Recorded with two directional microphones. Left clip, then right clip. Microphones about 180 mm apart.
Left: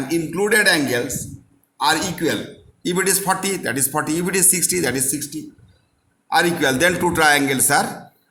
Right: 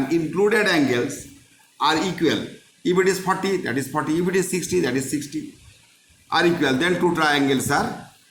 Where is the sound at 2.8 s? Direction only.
30° left (ahead or behind).